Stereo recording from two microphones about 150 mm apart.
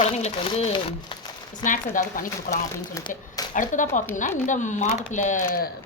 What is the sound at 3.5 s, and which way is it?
Speech, 60° left (ahead or behind).